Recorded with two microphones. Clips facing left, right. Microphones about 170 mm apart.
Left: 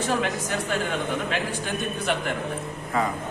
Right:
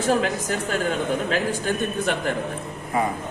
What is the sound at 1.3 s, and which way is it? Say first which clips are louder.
A man's voice: right 4 dB; 40° right (ahead or behind).